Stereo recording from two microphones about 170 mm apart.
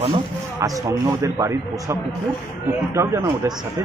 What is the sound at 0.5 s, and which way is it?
A man's voice, 20° right (ahead or behind).